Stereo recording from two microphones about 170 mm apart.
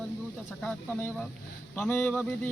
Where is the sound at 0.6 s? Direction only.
10° left (ahead or behind).